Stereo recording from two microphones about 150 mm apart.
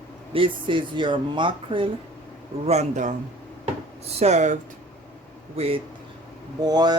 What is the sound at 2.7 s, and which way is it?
Speech, 50° right (ahead or behind).